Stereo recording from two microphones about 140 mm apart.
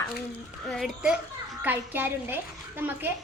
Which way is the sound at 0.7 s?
Centre (ahead or behind).